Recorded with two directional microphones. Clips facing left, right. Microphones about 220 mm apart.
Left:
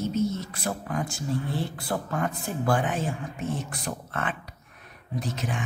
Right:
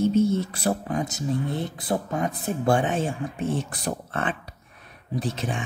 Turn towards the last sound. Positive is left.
turn(degrees=-30)  # may be behind; listen again after turning